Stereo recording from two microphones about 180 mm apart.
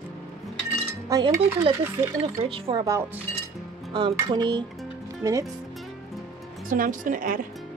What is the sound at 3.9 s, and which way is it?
Speech, 25° right (ahead or behind).